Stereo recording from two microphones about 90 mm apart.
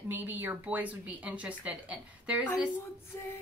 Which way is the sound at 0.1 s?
20° right (ahead or behind).